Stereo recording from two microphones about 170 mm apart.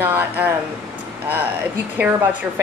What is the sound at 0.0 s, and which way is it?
Speech, 10° right (ahead or behind).